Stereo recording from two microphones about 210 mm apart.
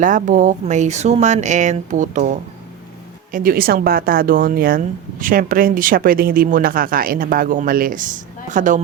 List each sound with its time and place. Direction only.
0.0 s speech: 40° right (ahead or behind)